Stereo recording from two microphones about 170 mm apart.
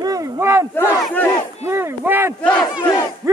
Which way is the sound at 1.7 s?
10° right (ahead or behind).